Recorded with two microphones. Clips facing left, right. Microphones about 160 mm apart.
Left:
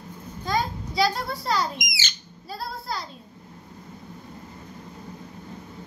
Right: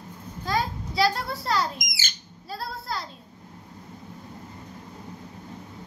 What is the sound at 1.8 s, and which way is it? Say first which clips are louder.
Speech: left 3 dB; 45° right (ahead or behind).